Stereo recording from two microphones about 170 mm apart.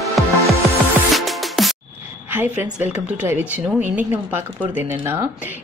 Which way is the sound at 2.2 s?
10° right (ahead or behind).